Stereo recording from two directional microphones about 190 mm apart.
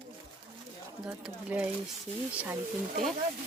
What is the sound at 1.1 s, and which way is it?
Speech, 5° right (ahead or behind).